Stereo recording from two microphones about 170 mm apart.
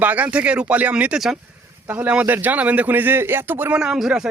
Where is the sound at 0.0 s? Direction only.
10° right (ahead or behind).